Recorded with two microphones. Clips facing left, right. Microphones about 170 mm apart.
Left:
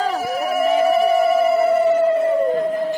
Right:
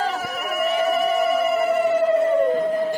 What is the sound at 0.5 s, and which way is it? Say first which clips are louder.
Music: left 4 dB; 30° left (ahead or behind).